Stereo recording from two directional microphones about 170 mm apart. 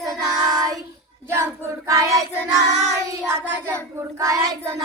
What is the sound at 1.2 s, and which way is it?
Speech, 15° right (ahead or behind).